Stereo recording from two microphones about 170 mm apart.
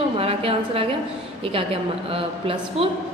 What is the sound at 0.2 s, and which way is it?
A woman's voice, 35° right (ahead or behind).